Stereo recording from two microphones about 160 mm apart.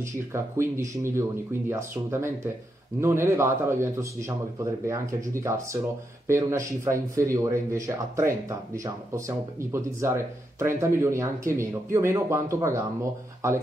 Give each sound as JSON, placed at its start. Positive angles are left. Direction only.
{"t": 0.0, "sound": "speech", "side_deg": -15}